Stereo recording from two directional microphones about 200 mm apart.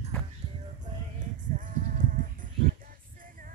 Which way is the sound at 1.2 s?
40° right (ahead or behind).